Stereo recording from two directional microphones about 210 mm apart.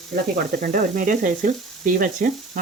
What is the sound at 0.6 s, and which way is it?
Frying, 40° right (ahead or behind).